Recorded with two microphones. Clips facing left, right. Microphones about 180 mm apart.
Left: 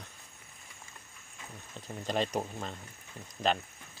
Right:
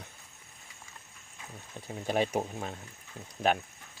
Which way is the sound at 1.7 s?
10° right (ahead or behind).